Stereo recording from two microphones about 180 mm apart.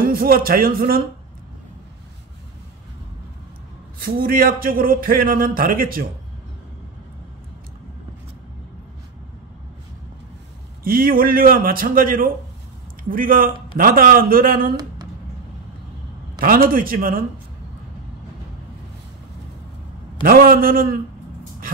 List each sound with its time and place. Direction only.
0.1 s speech: 55° right (ahead or behind)
4.0 s a man's voice: 55° right (ahead or behind)
10.8 s a man's voice: 55° right (ahead or behind)
16.3 s a man's voice: 55° right (ahead or behind)
20.2 s a man's voice: 55° right (ahead or behind)